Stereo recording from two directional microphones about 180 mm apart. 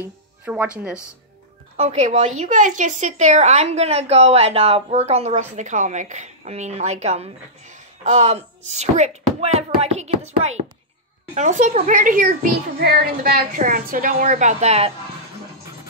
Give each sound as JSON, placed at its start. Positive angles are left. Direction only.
{"t": 0.0, "sound": "speech", "side_deg": -10}
{"t": 1.8, "sound": "a woman's voice", "side_deg": -40}